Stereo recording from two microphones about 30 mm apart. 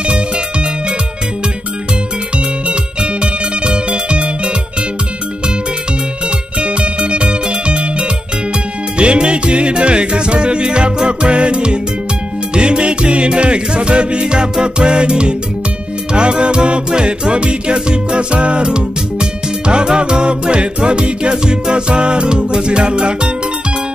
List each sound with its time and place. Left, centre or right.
0.0 s music: right
2.3 s music: right
6.6 s music: right